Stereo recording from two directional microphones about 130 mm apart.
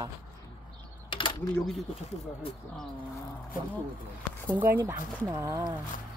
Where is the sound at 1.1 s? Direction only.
40° left (ahead or behind).